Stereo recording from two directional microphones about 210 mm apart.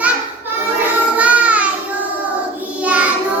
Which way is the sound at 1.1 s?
5° right (ahead or behind).